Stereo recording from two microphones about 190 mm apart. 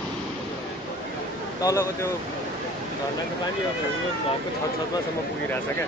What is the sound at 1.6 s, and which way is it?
Speech, 15° left (ahead or behind).